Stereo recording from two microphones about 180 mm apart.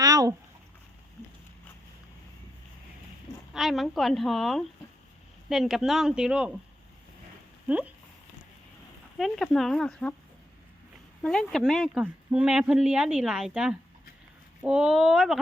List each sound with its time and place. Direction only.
0.0 s a sound: 20° right (ahead or behind)
3.5 s speech: centre (ahead or behind)
7.7 s speech: 10° right (ahead or behind)
9.1 s speech: centre (ahead or behind)
11.2 s speech: 5° left (ahead or behind)